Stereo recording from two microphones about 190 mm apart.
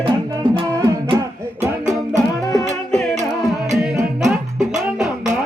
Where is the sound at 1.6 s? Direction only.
40° right (ahead or behind).